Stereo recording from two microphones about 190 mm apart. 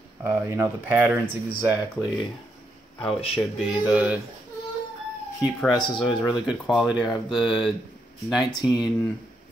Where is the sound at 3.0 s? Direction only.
30° left (ahead or behind).